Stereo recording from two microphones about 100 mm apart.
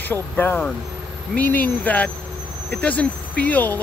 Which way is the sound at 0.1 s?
20° left (ahead or behind).